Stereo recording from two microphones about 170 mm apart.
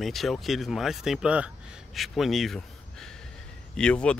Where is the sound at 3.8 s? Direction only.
5° left (ahead or behind).